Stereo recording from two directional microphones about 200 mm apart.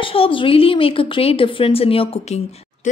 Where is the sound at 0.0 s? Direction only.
25° left (ahead or behind).